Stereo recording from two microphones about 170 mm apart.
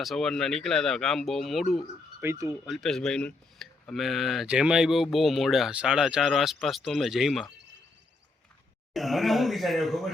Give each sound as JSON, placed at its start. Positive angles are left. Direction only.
{"t": 0.0, "sound": "speech", "side_deg": 0}
{"t": 2.2, "sound": "speech", "side_deg": -15}
{"t": 2.5, "sound": "speech", "side_deg": 0}
{"t": 8.9, "sound": "speech", "side_deg": 0}